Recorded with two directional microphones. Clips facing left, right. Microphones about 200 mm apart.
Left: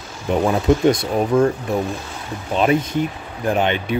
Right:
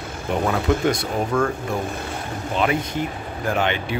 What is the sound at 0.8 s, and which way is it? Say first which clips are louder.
Speech: left 5 dB; 20° left (ahead or behind).